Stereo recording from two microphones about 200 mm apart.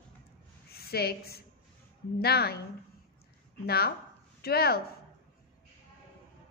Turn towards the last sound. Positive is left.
turn(degrees=50)  # may be behind; listen again after turning